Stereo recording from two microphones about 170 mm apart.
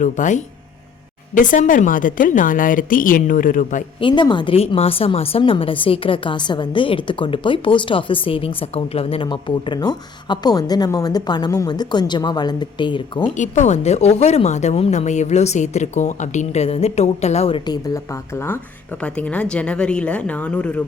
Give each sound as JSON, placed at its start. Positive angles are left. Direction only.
{"t": 0.0, "sound": "a woman's voice", "side_deg": 45}
{"t": 4.0, "sound": "a woman's voice", "side_deg": 25}
{"t": 13.3, "sound": "speech", "side_deg": 45}
{"t": 17.7, "sound": "speech", "side_deg": 20}